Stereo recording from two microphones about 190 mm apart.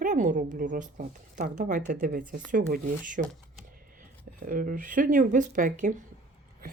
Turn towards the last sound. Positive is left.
turn(degrees=-40)  # may be behind; listen again after turning